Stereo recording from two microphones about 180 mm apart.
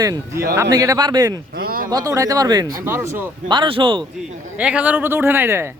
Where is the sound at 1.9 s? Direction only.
20° right (ahead or behind).